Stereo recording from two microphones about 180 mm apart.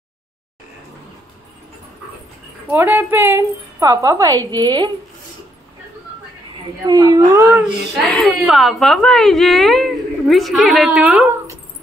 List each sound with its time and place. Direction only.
2.7 s a woman's voice: 10° right (ahead or behind)
6.9 s a woman's voice: 20° right (ahead or behind)
7.6 s speech: centre (ahead or behind)